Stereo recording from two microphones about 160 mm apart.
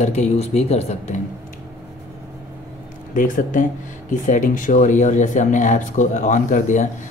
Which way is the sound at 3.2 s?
55° left (ahead or behind).